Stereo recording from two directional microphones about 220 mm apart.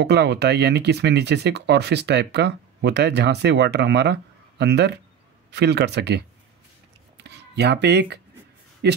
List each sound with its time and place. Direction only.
0.0 s speech: 50° right (ahead or behind)
7.2 s a sound: 50° right (ahead or behind)
8.8 s speech: 50° right (ahead or behind)